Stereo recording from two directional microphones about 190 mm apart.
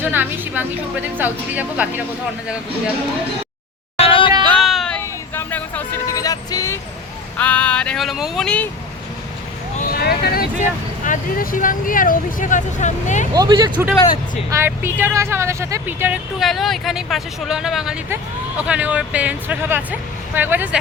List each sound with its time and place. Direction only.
0.0 s speech: 10° right (ahead or behind)
3.9 s music: 30° left (ahead or behind)
4.4 s a sound: centre (ahead or behind); by 6.7 s 20° left (ahead or behind)
7.3 s speech: 5° left (ahead or behind)
9.7 s vehicle: 55° left (ahead or behind)
10.6 s speech: 45° left (ahead or behind)
13.3 s speech: 20° right (ahead or behind)
14.5 s speech: 10° right (ahead or behind)